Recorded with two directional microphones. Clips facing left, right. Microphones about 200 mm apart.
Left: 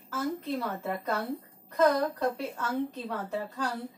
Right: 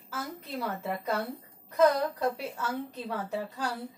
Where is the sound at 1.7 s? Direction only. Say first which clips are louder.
Right 1 dB; 5° right (ahead or behind).